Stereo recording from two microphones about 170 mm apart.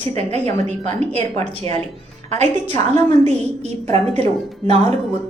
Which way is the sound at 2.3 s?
45° right (ahead or behind).